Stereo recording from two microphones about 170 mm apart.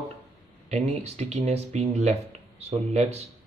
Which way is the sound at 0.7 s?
40° right (ahead or behind).